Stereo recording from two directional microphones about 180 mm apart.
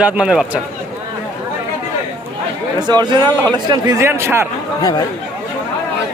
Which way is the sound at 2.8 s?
25° right (ahead or behind).